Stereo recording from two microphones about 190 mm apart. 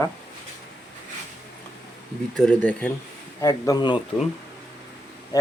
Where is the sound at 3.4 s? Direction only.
20° left (ahead or behind).